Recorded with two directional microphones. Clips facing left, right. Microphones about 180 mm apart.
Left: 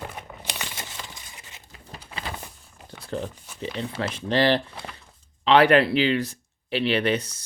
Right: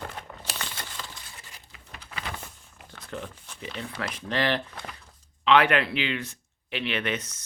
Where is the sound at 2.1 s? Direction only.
30° left (ahead or behind).